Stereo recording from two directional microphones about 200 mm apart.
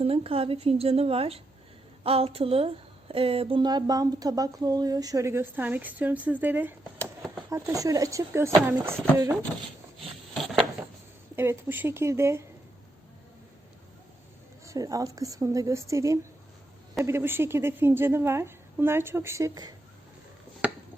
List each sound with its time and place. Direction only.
0.0 s a woman's voice: 30° right (ahead or behind); by 9.0 s 10° right (ahead or behind)
10.3 s a sound: centre (ahead or behind)
11.3 s a woman's voice: 10° right (ahead or behind)
14.6 s a woman's voice: 15° right (ahead or behind)